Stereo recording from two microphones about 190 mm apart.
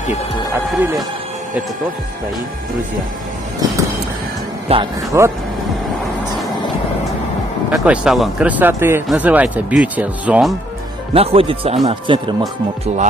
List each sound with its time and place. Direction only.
4.7 s speech: 30° right (ahead or behind)
5.1 s speech: 15° right (ahead or behind)
7.7 s speech: 5° right (ahead or behind)
11.1 s speech: 30° right (ahead or behind)